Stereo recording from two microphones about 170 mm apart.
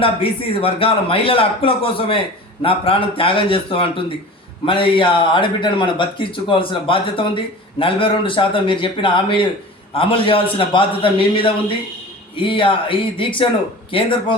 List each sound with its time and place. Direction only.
0.0 s a man's voice: 35° left (ahead or behind)